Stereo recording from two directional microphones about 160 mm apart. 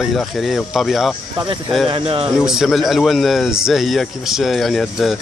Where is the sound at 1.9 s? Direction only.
35° right (ahead or behind).